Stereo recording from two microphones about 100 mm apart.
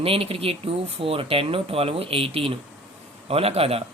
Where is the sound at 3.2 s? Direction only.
85° right.